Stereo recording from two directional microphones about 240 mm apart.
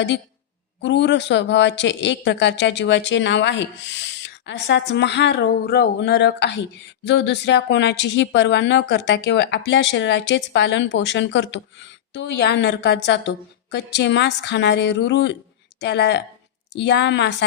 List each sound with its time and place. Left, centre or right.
0.8 s speech: left